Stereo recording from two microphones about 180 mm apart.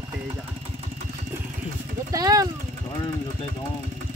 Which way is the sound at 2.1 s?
20° right (ahead or behind).